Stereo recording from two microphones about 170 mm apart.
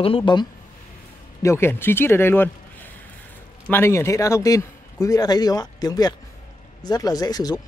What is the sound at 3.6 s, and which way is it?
A man's voice, 15° left (ahead or behind).